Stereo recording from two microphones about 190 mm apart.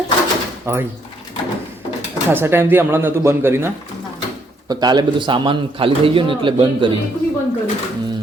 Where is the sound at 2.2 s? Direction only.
10° right (ahead or behind).